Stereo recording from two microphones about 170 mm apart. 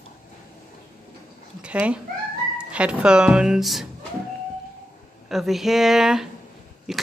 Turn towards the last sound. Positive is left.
turn(degrees=0)  # may be behind; listen again after turning